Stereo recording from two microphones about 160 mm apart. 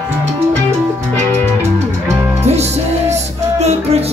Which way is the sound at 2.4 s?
40° right (ahead or behind).